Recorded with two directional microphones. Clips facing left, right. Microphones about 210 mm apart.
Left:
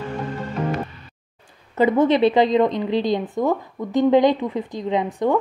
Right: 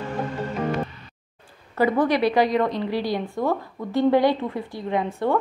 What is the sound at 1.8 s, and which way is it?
A woman's voice, 20° left (ahead or behind).